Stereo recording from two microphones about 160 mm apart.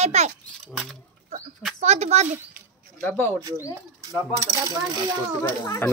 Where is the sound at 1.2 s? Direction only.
50° right (ahead or behind).